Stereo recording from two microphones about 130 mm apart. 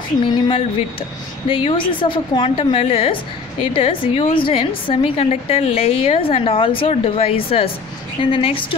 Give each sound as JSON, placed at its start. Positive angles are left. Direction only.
{"t": 0.2, "sound": "a woman's voice", "side_deg": 40}